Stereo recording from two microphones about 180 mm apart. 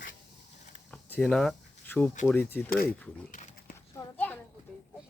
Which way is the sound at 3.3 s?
45° left (ahead or behind).